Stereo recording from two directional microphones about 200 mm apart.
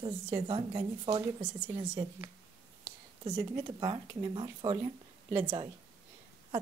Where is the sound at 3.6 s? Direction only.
25° right (ahead or behind).